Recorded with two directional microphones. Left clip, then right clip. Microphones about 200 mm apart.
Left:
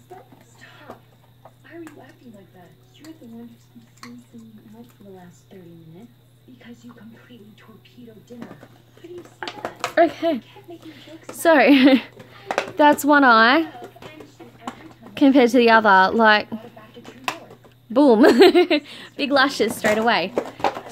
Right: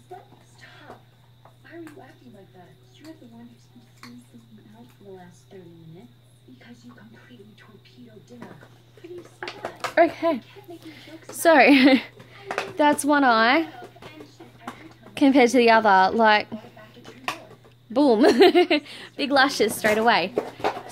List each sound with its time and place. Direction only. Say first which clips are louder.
9.4 s speech: left 3 dB; 45° left (ahead or behind)
9.9 s speech: left 1 dB; 5° left (ahead or behind)
11.4 s speech: left 1 dB; 5° left (ahead or behind)
14.8 s a woman's voice: left 3 dB; 10° left (ahead or behind)
17.0 s a sound: left 3 dB; 50° left (ahead or behind)
17.9 s a woman's voice: left 4 dB; 20° left (ahead or behind); by 20.3 s centre (ahead or behind)